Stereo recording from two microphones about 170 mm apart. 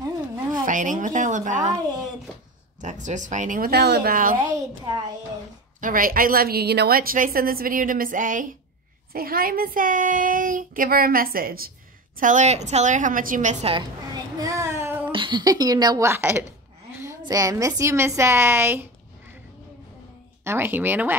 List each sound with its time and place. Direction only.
0.7 s speech: 50° right (ahead or behind)
2.8 s speech: 45° right (ahead or behind)
4.4 s a child's voice: 25° right (ahead or behind)
5.8 s a woman's voice: 55° right (ahead or behind)
12.2 s a woman's voice: 45° right (ahead or behind); by 15.0 s 15° right (ahead or behind)
15.0 s a woman's voice: 30° right (ahead or behind); by 18.9 s 10° right (ahead or behind)
20.4 s a woman's voice: 10° right (ahead or behind)